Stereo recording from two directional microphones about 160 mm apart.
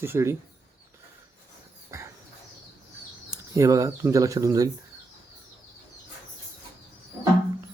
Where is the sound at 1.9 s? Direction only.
20° right (ahead or behind).